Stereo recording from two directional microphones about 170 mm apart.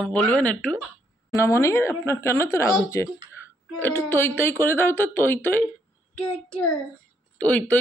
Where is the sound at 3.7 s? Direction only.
15° left (ahead or behind).